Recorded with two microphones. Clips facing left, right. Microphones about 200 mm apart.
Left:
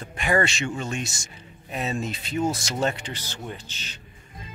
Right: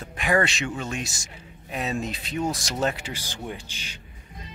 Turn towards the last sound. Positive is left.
turn(degrees=-10)  # may be behind; listen again after turning